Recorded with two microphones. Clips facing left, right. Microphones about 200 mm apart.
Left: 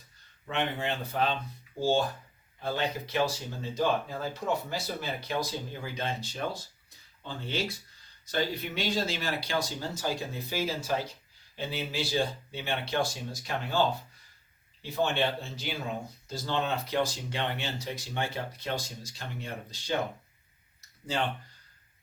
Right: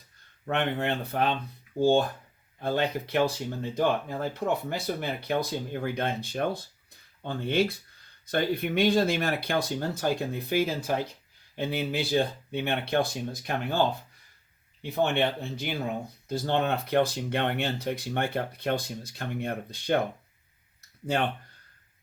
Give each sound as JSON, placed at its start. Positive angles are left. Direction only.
{"t": 0.4, "sound": "speech", "side_deg": -55}
{"t": 21.1, "sound": "speech", "side_deg": -60}